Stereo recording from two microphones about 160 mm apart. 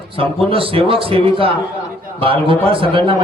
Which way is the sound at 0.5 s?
35° right (ahead or behind).